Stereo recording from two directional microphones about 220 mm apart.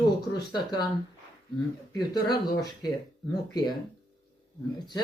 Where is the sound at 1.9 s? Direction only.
20° left (ahead or behind).